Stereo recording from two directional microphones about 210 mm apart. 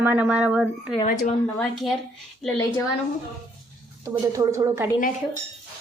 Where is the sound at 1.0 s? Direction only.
40° left (ahead or behind).